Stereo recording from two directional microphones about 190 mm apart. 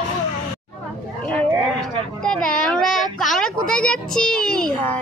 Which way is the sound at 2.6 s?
5° left (ahead or behind).